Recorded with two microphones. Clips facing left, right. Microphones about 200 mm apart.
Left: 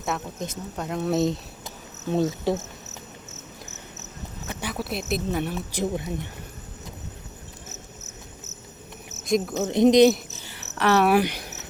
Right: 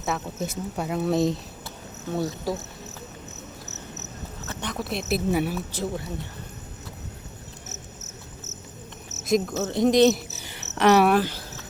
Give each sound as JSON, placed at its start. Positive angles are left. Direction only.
{"t": 0.0, "sound": "speech", "side_deg": -5}
{"t": 2.1, "sound": "cricket", "side_deg": 25}
{"t": 4.4, "sound": "speech", "side_deg": 5}
{"t": 5.7, "sound": "speech", "side_deg": 15}
{"t": 9.2, "sound": "cricket", "side_deg": 0}
{"t": 9.6, "sound": "speech", "side_deg": 15}
{"t": 10.1, "sound": "speech", "side_deg": -5}
{"t": 10.4, "sound": "cricket", "side_deg": -20}
{"t": 11.2, "sound": "cricket", "side_deg": 15}